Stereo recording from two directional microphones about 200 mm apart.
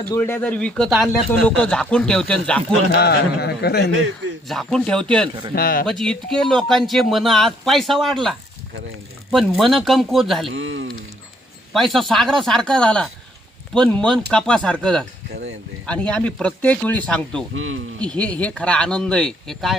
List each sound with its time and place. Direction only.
0.1 s speech: 10° left (ahead or behind)
3.0 s speech: 55° left (ahead or behind)
4.4 s speech: centre (ahead or behind)
5.5 s speech: 45° left (ahead or behind)
5.8 s speech: centre (ahead or behind)
10.5 s speech: 75° right (ahead or behind)
11.7 s speech: centre (ahead or behind)
15.3 s speech: 65° right (ahead or behind)
15.9 s speech: 5° left (ahead or behind)
17.5 s speech: 85° right
18.0 s speech: 5° left (ahead or behind)